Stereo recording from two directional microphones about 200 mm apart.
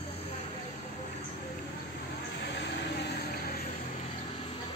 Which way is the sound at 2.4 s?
60° left (ahead or behind).